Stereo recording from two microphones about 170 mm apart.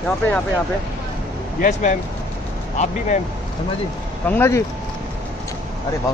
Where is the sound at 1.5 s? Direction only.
55° left (ahead or behind).